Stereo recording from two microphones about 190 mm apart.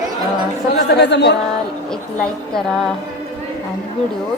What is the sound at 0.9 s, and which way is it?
Speech, 65° left (ahead or behind).